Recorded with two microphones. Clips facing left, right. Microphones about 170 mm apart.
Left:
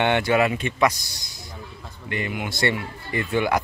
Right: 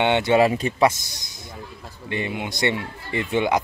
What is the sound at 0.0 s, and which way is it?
Speech, 20° right (ahead or behind).